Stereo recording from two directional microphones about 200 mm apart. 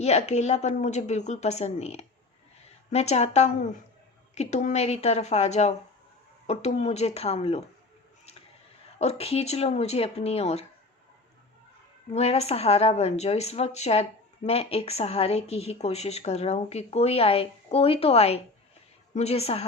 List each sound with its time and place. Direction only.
0.0 s a woman's voice: 35° left (ahead or behind)
9.0 s a woman's voice: 30° left (ahead or behind)
12.1 s a woman's voice: 30° left (ahead or behind)